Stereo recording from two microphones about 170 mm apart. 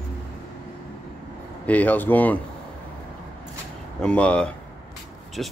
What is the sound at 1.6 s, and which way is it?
Speech, 10° left (ahead or behind).